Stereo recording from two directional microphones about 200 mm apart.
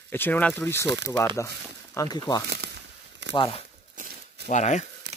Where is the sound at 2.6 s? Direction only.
55° right (ahead or behind).